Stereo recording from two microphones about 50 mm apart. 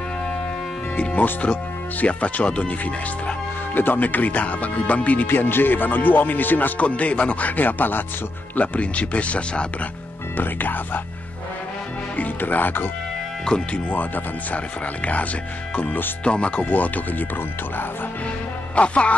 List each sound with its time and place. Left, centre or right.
0.9 s speech: left
3.7 s speech: left
5.3 s speech: left
8.5 s speech: left
10.3 s speech: left
12.2 s speech: left
13.5 s speech: centre
13.8 s speech: left
15.7 s speech: left
16.3 s speech: left
16.6 s speech: left
18.8 s speech: left